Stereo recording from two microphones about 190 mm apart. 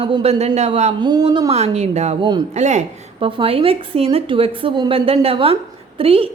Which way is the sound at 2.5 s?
35° right (ahead or behind).